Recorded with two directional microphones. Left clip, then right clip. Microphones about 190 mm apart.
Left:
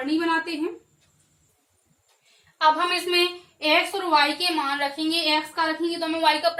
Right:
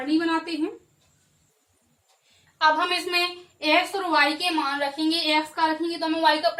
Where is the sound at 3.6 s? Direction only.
15° left (ahead or behind).